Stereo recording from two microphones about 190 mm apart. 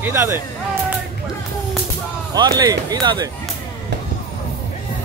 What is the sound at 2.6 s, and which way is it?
Speech, 20° right (ahead or behind).